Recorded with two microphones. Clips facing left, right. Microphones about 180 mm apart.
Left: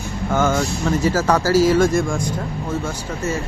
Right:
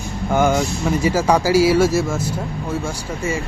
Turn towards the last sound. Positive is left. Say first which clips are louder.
# even
turn(degrees=-10)  # may be behind; listen again after turning